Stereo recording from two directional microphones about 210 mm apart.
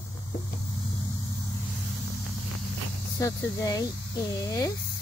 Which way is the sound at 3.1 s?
15° left (ahead or behind).